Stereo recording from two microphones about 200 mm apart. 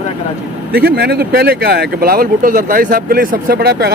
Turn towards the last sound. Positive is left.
turn(degrees=-50)  # may be behind; listen again after turning